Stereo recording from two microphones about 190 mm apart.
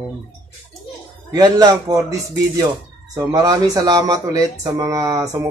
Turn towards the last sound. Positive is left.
turn(degrees=-20)  # may be behind; listen again after turning